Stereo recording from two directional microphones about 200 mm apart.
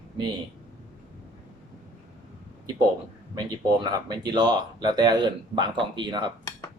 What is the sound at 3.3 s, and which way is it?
Speech, 20° right (ahead or behind).